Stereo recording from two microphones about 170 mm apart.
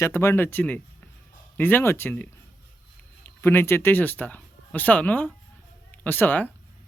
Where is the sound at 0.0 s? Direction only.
15° left (ahead or behind).